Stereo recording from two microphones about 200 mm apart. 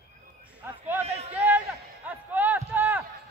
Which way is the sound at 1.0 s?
30° right (ahead or behind).